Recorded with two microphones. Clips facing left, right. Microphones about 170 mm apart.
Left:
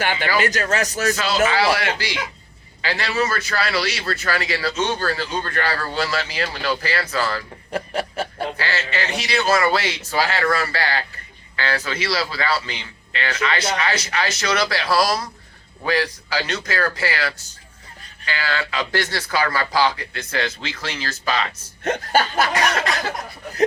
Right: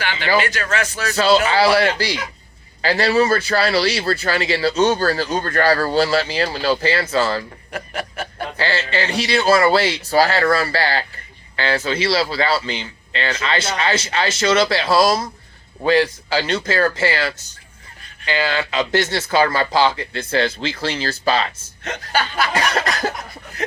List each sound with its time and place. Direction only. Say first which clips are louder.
0.0 s speech: right 1 dB; 50° left (ahead or behind)
1.1 s a man's voice: right 7 dB; 30° right (ahead or behind)
7.7 s snicker: left 4 dB; 30° left (ahead or behind)
8.5 s a man's voice: right 4 dB; 30° right (ahead or behind)
21.8 s speech: left 3 dB; 50° left (ahead or behind)
22.7 s a man's voice: right 2 dB; 40° right (ahead or behind)